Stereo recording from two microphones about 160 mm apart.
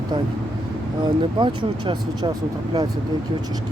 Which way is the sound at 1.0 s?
30° right (ahead or behind).